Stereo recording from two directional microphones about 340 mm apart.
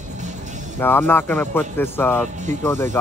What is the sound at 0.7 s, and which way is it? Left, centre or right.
Speech, centre.